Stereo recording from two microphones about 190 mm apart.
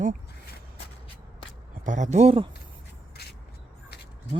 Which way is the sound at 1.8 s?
40° right (ahead or behind).